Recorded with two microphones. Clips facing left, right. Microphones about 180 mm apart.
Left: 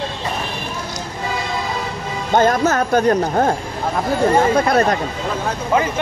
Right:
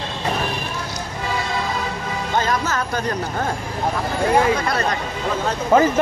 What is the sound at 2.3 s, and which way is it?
Speech, 50° left (ahead or behind).